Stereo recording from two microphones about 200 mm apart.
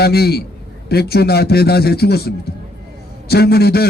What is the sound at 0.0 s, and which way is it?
A man's voice, 50° left (ahead or behind).